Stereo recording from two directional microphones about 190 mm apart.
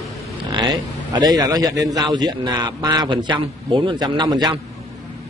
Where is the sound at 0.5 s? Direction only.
20° right (ahead or behind).